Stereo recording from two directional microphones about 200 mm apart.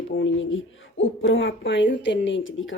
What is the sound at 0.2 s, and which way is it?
Speech, 70° left (ahead or behind).